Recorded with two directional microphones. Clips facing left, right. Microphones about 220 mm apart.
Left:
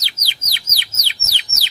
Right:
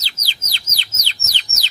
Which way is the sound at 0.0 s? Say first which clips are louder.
Even; 15° left (ahead or behind).